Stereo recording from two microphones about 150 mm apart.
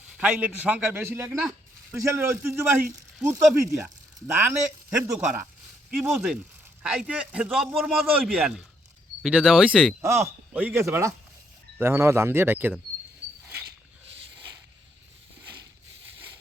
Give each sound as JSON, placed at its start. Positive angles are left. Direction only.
{"t": 0.2, "sound": "a man's voice", "side_deg": -10}
{"t": 4.4, "sound": "a man's voice", "side_deg": -15}
{"t": 10.0, "sound": "a man's voice", "side_deg": -15}